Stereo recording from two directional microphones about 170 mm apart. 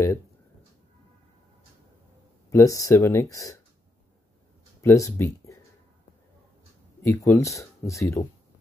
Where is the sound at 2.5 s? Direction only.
20° left (ahead or behind).